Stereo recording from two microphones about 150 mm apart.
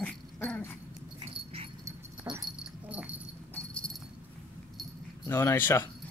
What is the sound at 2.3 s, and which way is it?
Dog, 20° right (ahead or behind).